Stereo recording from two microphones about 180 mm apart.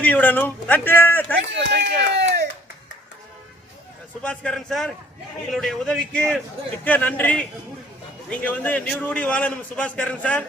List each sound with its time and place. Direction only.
0.0 s a man's voice: 10° left (ahead or behind)
1.5 s a sound: 75° right (ahead or behind)
4.2 s a man's voice: 5° left (ahead or behind)